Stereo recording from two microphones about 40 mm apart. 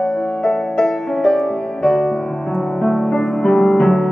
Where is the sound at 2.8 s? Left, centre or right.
Centre.